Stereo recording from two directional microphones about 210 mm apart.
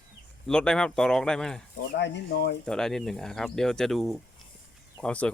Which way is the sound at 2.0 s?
55° left (ahead or behind).